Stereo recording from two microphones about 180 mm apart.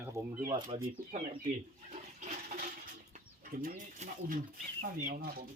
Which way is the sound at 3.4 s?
55° right (ahead or behind).